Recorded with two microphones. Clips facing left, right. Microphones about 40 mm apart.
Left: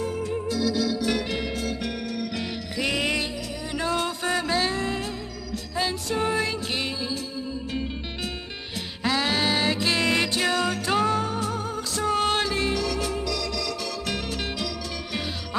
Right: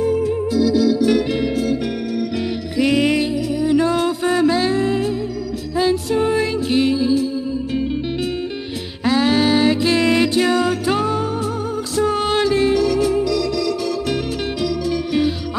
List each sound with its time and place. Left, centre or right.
0.0 s organ: centre
2.8 s music: centre
9.0 s music: centre